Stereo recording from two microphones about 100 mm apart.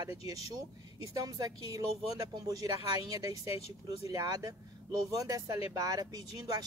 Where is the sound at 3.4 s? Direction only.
80° left.